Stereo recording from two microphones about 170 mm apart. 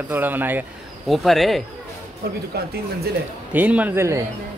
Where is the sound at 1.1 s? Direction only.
Centre (ahead or behind).